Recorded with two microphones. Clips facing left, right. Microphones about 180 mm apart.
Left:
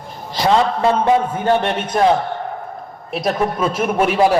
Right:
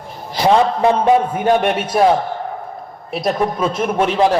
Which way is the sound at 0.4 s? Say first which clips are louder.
Right 2 dB; 15° right (ahead or behind).